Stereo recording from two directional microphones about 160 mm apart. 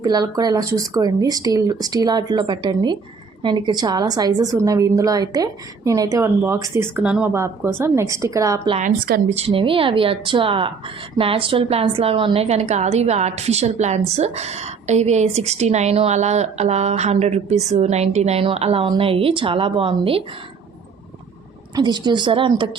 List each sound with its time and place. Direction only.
0.0 s a woman's voice: 25° right (ahead or behind)
8.8 s speech: 65° right (ahead or behind)
9.5 s a woman's voice: 35° right (ahead or behind)
21.8 s speech: 25° right (ahead or behind)